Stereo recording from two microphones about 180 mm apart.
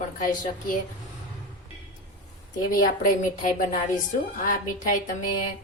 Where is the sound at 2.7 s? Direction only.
50° left (ahead or behind).